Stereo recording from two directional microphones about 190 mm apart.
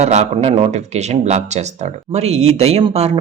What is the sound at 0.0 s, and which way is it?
Speech, 35° right (ahead or behind).